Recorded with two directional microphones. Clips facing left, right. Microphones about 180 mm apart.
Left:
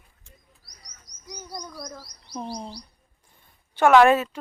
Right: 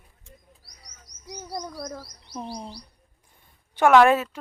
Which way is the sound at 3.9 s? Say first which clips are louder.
Left 1 dB; centre (ahead or behind).